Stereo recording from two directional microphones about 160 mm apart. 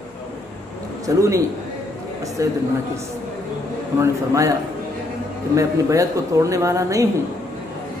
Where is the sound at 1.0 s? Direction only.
20° right (ahead or behind).